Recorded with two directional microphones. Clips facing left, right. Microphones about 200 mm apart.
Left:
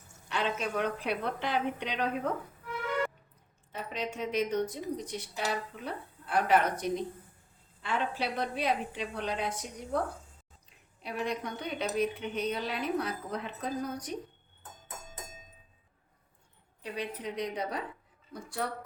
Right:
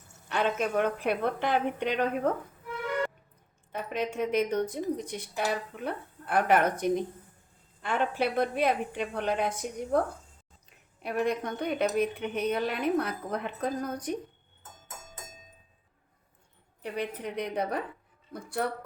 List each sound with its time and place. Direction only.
0.3 s a woman's voice: 50° right (ahead or behind)
3.7 s a woman's voice: 55° right (ahead or behind)
11.0 s speech: 55° right (ahead or behind)
16.8 s speech: 55° right (ahead or behind)